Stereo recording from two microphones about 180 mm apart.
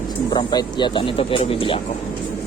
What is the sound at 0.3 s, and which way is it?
Speech, 25° left (ahead or behind).